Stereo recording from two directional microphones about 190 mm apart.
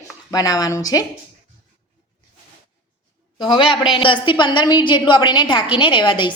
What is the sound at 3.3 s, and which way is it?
A woman's voice, 25° left (ahead or behind).